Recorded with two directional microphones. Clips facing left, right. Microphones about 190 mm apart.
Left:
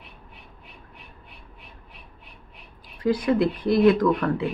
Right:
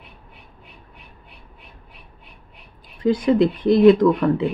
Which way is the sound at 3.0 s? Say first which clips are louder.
Right 4 dB; 20° right (ahead or behind).